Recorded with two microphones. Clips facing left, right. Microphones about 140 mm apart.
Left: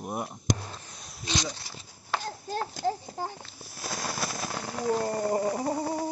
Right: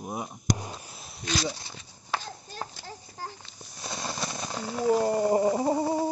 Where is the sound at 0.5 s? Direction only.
15° right (ahead or behind).